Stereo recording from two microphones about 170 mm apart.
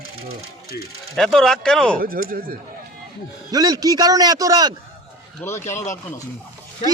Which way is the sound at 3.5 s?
20° right (ahead or behind).